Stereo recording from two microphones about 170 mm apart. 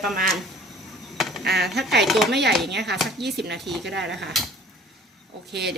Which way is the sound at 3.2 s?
80° right.